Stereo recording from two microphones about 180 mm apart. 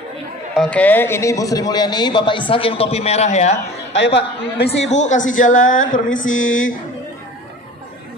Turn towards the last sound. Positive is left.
turn(degrees=90)